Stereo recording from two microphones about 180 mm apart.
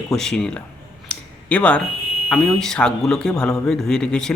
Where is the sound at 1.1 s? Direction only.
5° left (ahead or behind).